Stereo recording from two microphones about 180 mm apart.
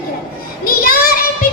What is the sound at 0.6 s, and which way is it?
Child singing, 55° left (ahead or behind).